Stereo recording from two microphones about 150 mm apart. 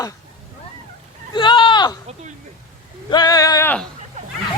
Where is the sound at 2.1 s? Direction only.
50° right (ahead or behind).